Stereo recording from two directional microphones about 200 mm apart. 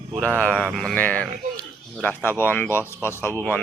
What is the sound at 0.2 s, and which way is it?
Speech, 5° left (ahead or behind).